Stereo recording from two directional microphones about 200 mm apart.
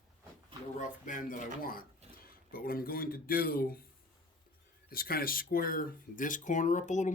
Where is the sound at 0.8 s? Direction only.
40° left (ahead or behind).